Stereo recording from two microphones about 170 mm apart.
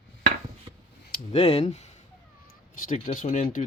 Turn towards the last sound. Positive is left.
turn(degrees=40)  # may be behind; listen again after turning